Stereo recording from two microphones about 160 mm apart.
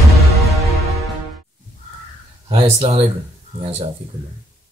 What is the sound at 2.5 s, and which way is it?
Speech, 35° right (ahead or behind).